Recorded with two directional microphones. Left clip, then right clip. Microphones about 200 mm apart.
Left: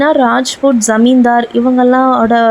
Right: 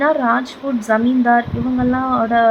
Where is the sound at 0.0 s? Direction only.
30° left (ahead or behind).